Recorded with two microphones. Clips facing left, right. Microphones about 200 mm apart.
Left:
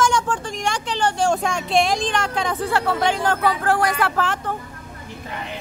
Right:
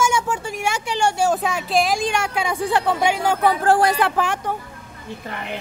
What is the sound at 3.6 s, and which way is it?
Speech, 30° right (ahead or behind).